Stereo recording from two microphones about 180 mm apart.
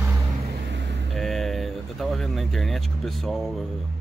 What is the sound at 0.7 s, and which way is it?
Vehicle, 75° right (ahead or behind).